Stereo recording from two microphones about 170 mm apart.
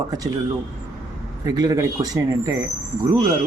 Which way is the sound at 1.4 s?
20° right (ahead or behind).